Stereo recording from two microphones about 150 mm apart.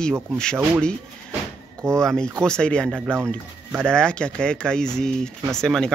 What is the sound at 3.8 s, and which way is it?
Speech, 5° left (ahead or behind).